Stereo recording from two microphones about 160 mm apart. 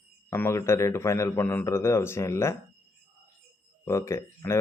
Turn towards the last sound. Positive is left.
turn(degrees=20)  # may be behind; listen again after turning